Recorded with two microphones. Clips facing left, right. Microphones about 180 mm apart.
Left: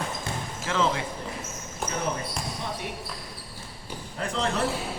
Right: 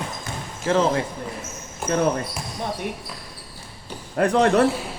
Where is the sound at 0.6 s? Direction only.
35° right (ahead or behind).